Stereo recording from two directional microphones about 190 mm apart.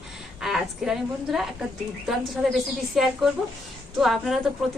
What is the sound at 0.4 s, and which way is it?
A woman's voice, centre (ahead or behind).